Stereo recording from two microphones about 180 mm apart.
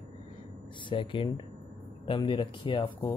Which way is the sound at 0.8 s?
25° left (ahead or behind).